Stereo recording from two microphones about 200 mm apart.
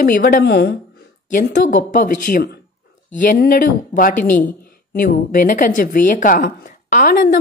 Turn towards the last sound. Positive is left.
turn(degrees=45)  # may be behind; listen again after turning